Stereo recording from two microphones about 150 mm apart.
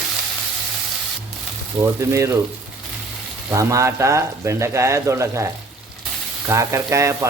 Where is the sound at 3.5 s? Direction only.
20° right (ahead or behind).